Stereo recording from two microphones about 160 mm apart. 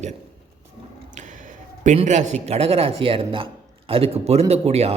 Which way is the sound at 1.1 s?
50° right (ahead or behind).